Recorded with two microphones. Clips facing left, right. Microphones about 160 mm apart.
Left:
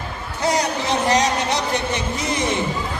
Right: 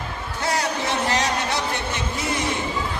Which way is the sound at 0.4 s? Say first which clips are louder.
Left 4 dB; 20° left (ahead or behind).